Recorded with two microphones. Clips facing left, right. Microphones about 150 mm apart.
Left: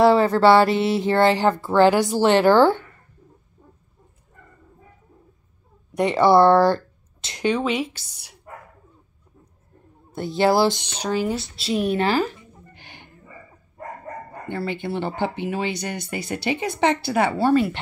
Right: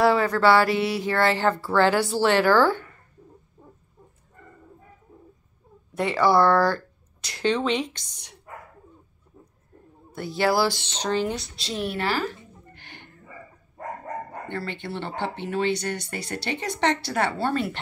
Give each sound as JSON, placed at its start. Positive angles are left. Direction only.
{"t": 0.0, "sound": "speech", "side_deg": 25}
{"t": 5.9, "sound": "speech", "side_deg": 20}
{"t": 7.4, "sound": "speech", "side_deg": 10}
{"t": 10.1, "sound": "speech", "side_deg": 25}
{"t": 14.5, "sound": "speech", "side_deg": 10}